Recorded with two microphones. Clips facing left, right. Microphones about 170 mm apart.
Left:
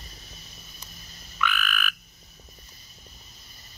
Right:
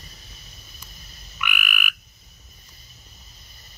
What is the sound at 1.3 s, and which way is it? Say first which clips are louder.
Frog: left 3 dB; 15° right (ahead or behind).